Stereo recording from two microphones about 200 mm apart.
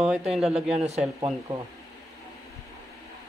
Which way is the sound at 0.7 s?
35° right (ahead or behind).